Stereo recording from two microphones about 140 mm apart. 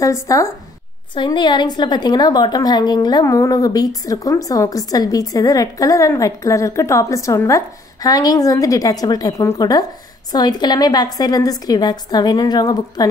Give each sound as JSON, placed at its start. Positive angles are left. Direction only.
{"t": 0.0, "sound": "a woman's voice", "side_deg": 20}
{"t": 1.1, "sound": "a woman's voice", "side_deg": 35}